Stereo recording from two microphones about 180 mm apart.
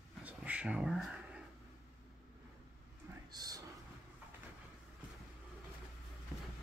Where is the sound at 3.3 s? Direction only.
20° right (ahead or behind).